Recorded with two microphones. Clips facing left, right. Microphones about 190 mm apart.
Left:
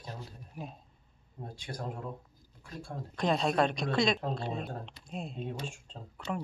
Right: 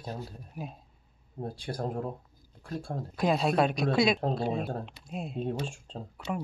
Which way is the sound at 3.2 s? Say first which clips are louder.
Right 2 dB; 5° right (ahead or behind).